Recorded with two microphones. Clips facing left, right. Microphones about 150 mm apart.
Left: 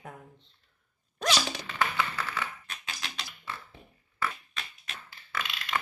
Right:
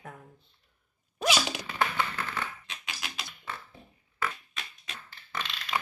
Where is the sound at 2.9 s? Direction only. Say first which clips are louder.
Right 1 dB; 5° right (ahead or behind).